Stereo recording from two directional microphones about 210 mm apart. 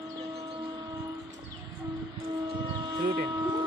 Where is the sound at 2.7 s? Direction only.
20° right (ahead or behind).